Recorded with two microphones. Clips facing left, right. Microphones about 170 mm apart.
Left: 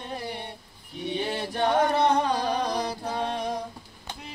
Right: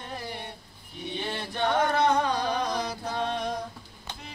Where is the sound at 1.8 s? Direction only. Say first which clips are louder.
Left 1 dB; 30° left (ahead or behind).